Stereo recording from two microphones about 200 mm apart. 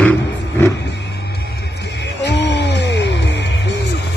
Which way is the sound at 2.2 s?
60° left (ahead or behind).